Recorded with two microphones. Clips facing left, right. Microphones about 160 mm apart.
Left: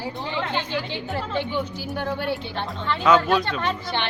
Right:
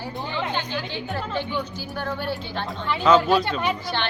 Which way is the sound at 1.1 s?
Centre (ahead or behind).